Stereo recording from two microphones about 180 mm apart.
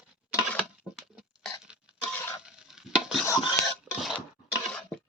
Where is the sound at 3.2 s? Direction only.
20° left (ahead or behind).